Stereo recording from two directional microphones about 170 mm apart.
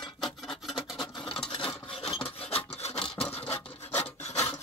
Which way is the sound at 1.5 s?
30° left (ahead or behind).